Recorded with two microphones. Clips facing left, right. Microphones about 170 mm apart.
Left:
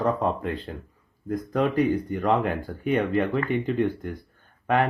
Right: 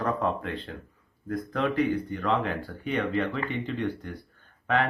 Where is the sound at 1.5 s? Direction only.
45° left (ahead or behind).